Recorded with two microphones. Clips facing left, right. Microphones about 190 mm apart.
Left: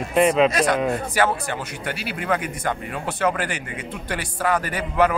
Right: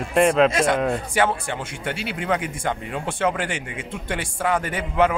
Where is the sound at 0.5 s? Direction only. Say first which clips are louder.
Even; 25° right (ahead or behind).